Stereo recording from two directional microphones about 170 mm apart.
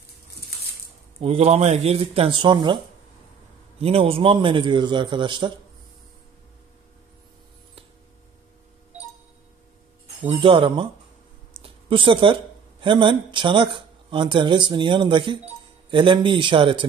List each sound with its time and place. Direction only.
1.2 s speech: 35° right (ahead or behind)
3.8 s speech: 35° right (ahead or behind)
10.2 s speech: 30° right (ahead or behind)
11.5 s a sound: 30° right (ahead or behind)
12.8 s speech: 30° right (ahead or behind)